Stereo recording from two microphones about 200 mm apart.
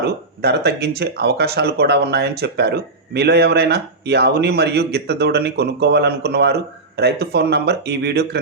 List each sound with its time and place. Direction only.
0.4 s speech: 55° right (ahead or behind)